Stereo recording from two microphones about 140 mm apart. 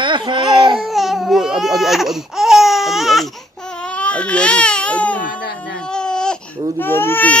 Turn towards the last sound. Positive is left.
turn(degrees=15)  # may be behind; listen again after turning